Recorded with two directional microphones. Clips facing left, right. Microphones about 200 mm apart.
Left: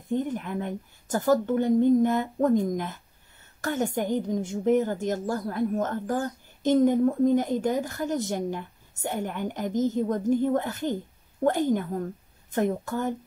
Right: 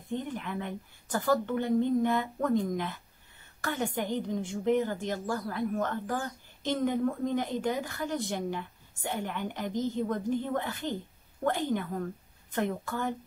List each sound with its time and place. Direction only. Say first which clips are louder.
0.1 s a woman's voice: left 6 dB; 45° left (ahead or behind)